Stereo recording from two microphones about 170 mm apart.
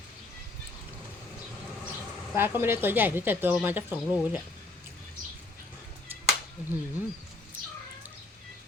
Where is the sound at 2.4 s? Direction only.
10° right (ahead or behind).